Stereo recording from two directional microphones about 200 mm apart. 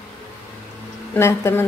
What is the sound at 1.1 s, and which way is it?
Speech, 15° left (ahead or behind).